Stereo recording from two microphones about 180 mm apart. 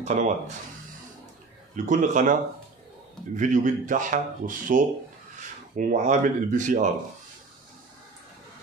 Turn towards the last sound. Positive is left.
turn(degrees=-45)  # may be behind; listen again after turning